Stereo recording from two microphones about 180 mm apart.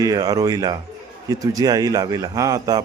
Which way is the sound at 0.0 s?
20° right (ahead or behind).